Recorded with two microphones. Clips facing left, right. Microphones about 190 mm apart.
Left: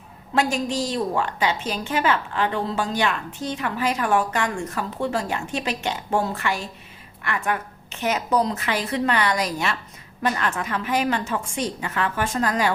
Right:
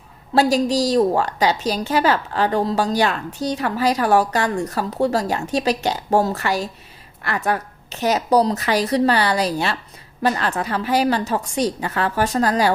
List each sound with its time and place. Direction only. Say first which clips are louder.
0.3 s a woman's voice: right 6 dB; 35° right (ahead or behind)